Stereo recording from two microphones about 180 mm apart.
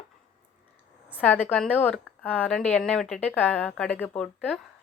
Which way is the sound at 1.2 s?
10° left (ahead or behind).